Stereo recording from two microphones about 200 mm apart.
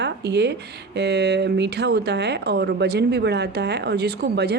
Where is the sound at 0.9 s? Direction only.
55° right (ahead or behind).